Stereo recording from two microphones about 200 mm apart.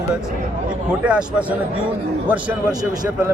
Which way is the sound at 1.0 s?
5° right (ahead or behind).